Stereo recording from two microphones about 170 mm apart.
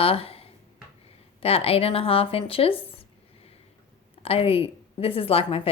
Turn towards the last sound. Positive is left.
turn(degrees=35)  # may be behind; listen again after turning